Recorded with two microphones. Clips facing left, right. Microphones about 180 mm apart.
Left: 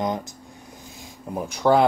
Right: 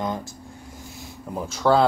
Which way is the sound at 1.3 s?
15° left (ahead or behind).